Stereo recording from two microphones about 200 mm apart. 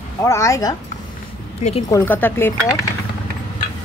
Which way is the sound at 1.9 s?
10° left (ahead or behind).